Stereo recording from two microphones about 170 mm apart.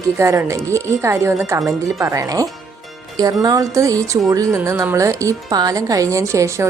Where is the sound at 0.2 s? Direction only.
15° right (ahead or behind).